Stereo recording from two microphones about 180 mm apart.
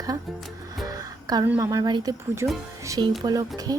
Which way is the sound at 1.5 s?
15° right (ahead or behind).